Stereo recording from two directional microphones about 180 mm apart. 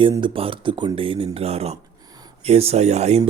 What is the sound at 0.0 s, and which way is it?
A man's voice, 30° right (ahead or behind).